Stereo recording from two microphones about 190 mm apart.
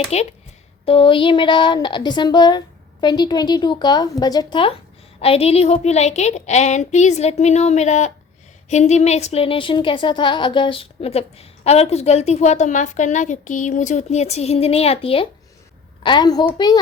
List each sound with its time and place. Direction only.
0.1 s a woman's voice: 35° left (ahead or behind)